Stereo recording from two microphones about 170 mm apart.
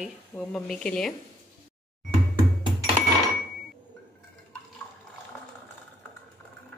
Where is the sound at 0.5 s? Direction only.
5° left (ahead or behind).